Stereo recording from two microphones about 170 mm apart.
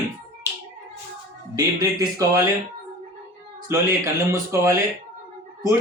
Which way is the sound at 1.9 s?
20° right (ahead or behind).